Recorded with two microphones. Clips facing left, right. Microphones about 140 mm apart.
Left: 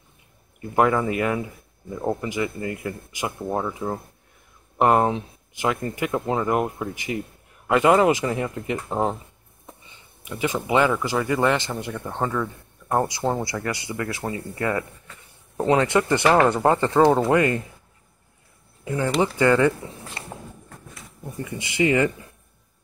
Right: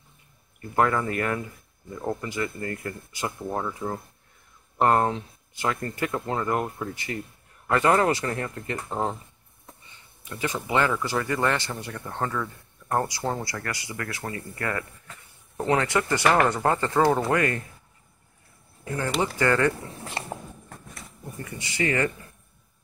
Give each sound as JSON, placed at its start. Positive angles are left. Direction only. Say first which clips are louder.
{"t": 0.7, "sound": "speech", "louder": "left 3 dB", "side_deg": 20}
{"t": 4.7, "sound": "speech", "louder": "left 3 dB", "side_deg": 15}
{"t": 10.2, "sound": "speech", "louder": "left 4 dB", "side_deg": 20}
{"t": 18.9, "sound": "speech", "louder": "left 5 dB", "side_deg": 20}
{"t": 21.5, "sound": "speech", "louder": "left 6 dB", "side_deg": 20}